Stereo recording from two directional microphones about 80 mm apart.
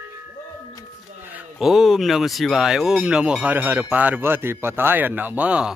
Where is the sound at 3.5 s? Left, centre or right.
Right.